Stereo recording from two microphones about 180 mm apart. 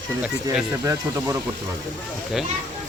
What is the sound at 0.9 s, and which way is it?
Speech, 15° right (ahead or behind).